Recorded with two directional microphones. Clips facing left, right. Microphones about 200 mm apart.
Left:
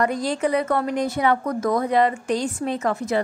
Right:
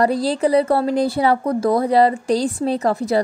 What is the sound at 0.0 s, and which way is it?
A woman's voice, 35° right (ahead or behind).